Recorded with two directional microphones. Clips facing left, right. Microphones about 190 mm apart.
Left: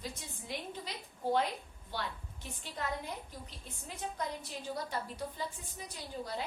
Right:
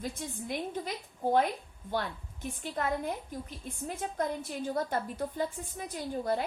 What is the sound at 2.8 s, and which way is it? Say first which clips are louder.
A woman's voice: right 6 dB; 50° right (ahead or behind).